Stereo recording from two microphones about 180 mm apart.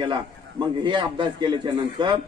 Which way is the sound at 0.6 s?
25° right (ahead or behind).